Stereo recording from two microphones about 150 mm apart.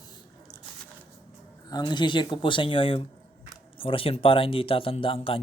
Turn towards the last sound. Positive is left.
turn(degrees=35)  # may be behind; listen again after turning